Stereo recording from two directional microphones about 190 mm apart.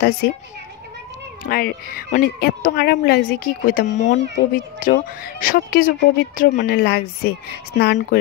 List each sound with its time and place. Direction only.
0.2 s a child's voice: 60° left (ahead or behind)
1.4 s speech: 50° left (ahead or behind)